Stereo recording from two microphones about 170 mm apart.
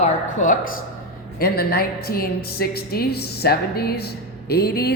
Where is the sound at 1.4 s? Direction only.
65° left (ahead or behind).